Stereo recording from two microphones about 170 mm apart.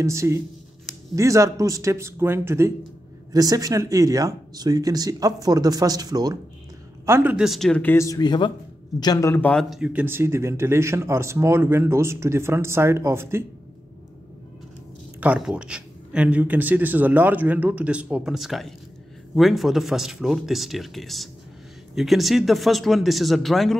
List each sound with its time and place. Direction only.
0.0 s speech: 15° right (ahead or behind)
7.1 s a man's voice: 10° right (ahead or behind)
15.1 s speech: 5° right (ahead or behind)